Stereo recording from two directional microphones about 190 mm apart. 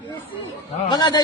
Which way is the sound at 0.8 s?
20° left (ahead or behind).